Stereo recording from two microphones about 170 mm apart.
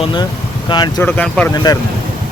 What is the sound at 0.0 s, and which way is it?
Speech, 30° left (ahead or behind).